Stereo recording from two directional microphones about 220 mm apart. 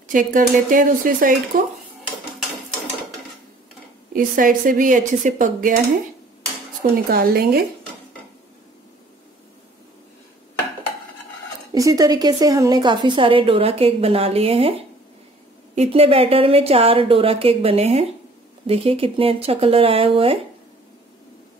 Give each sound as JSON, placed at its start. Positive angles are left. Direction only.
{"t": 0.1, "sound": "speech", "side_deg": -35}
{"t": 4.1, "sound": "speech", "side_deg": -40}
{"t": 6.8, "sound": "speech", "side_deg": -45}
{"t": 11.7, "sound": "a woman's voice", "side_deg": -15}